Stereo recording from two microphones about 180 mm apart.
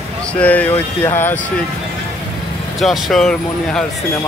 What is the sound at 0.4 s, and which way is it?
Speech, 10° left (ahead or behind).